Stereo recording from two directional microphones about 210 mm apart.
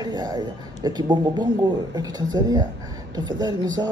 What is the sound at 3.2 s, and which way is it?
Speech, 20° right (ahead or behind).